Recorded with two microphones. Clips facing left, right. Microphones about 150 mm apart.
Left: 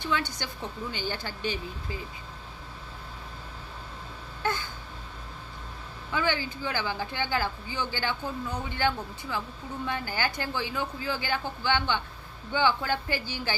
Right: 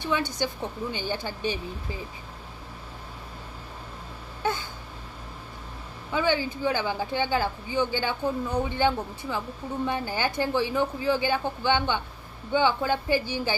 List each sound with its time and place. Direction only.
0.1 s a woman's voice: 20° right (ahead or behind)
4.4 s a sound: 20° right (ahead or behind)
6.1 s a woman's voice: 20° right (ahead or behind)